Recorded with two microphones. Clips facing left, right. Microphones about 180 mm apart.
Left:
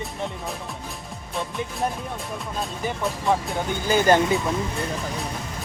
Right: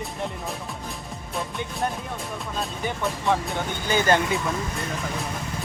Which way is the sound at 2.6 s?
Centre (ahead or behind).